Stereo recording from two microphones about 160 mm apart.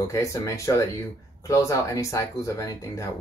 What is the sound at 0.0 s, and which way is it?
Speech, 20° left (ahead or behind).